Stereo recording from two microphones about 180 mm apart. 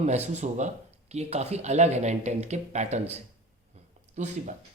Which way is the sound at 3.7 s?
40° right (ahead or behind).